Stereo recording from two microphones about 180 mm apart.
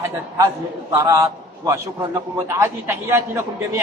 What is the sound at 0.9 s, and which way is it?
A man's voice, 15° right (ahead or behind).